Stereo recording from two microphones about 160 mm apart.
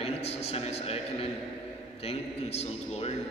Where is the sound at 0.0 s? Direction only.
40° left (ahead or behind).